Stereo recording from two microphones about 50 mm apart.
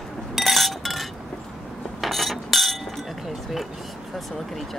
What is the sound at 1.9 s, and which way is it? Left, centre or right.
Chink, centre.